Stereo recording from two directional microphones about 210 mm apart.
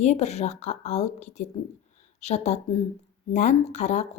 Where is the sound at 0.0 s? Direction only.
30° left (ahead or behind).